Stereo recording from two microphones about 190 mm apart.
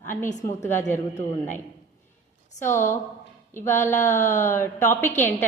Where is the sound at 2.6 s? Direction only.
15° left (ahead or behind).